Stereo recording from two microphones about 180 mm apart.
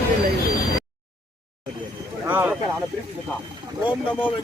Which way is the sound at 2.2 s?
10° right (ahead or behind).